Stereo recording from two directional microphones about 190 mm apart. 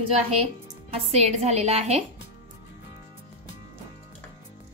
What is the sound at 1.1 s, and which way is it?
Speech, 35° right (ahead or behind).